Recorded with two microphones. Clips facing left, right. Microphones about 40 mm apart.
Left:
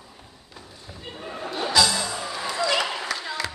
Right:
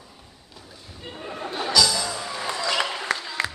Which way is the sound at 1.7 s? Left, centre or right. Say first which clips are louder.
Even; left.